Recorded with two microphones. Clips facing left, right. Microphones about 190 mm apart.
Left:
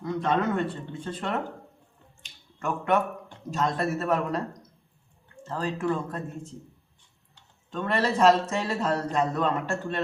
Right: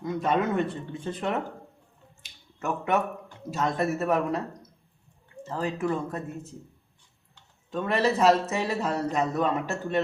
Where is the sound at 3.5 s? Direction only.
10° right (ahead or behind).